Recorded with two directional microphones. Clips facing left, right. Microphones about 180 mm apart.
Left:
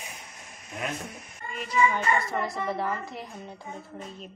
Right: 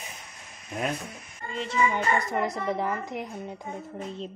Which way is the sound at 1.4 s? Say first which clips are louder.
Left 1 dB; 25° right (ahead or behind).